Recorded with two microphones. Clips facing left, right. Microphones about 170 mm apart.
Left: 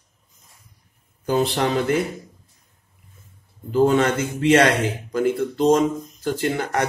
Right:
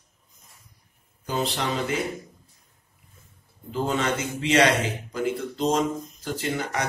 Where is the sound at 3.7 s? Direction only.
55° left (ahead or behind).